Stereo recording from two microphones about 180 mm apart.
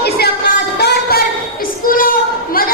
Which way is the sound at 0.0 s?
60° left (ahead or behind).